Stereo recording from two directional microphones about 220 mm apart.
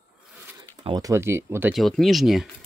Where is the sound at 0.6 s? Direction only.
15° right (ahead or behind); by 2.4 s centre (ahead or behind).